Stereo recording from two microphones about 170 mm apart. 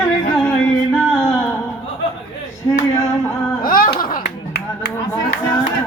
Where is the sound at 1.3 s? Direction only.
15° left (ahead or behind).